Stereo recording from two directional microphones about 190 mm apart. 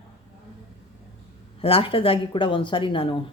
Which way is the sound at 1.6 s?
30° left (ahead or behind).